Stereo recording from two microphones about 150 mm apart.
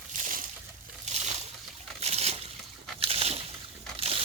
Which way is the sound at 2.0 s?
45° right (ahead or behind).